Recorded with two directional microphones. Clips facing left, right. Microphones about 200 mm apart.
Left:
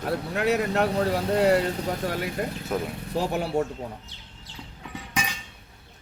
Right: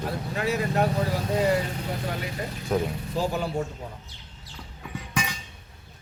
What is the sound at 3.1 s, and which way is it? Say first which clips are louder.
Speech: left 3 dB; 70° left (ahead or behind).